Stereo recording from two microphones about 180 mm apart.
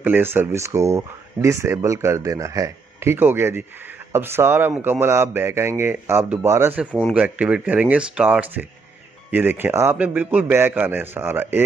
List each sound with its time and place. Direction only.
0.0 s speech: 10° right (ahead or behind)